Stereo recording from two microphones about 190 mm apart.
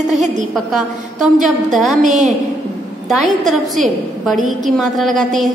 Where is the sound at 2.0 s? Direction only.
40° right (ahead or behind).